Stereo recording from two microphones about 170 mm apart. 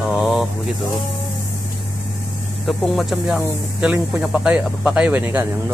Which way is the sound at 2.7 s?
Centre (ahead or behind).